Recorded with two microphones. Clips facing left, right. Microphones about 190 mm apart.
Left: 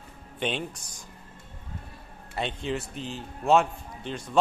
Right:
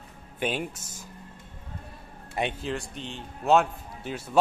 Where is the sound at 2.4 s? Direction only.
10° right (ahead or behind).